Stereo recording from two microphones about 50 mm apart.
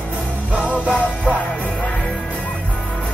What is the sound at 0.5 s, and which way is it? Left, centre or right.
Music, right.